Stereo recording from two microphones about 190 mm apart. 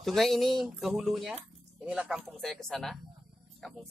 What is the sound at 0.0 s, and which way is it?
Speech, centre (ahead or behind).